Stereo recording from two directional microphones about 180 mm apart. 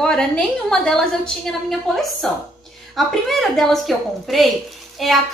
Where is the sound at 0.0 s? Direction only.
5° left (ahead or behind).